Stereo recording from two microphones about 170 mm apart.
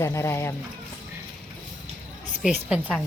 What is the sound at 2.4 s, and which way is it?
Speech, 5° right (ahead or behind).